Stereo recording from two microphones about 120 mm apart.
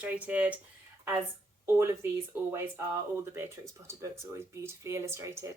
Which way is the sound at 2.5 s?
20° right (ahead or behind).